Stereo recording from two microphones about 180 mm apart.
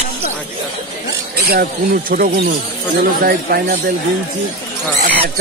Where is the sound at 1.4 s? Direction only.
60° right (ahead or behind).